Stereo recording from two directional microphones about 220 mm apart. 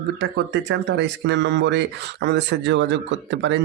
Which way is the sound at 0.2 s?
50° right (ahead or behind).